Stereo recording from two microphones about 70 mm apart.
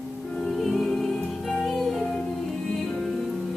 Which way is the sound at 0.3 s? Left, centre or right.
Centre.